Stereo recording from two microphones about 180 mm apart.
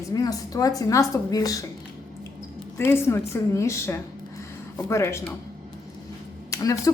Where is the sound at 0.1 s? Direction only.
20° left (ahead or behind).